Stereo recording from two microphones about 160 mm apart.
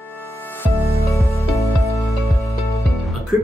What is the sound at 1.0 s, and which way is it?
Music, 20° left (ahead or behind).